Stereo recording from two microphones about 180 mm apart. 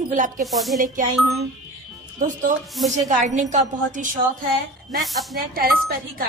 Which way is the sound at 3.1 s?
40° right (ahead or behind).